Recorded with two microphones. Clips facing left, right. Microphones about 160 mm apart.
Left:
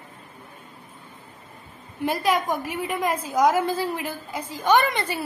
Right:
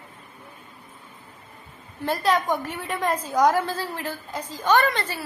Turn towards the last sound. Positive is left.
turn(degrees=15)  # may be behind; listen again after turning